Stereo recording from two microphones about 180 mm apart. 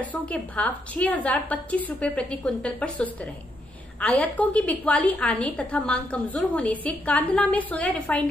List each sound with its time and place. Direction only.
0.0 s a woman's voice: 10° left (ahead or behind)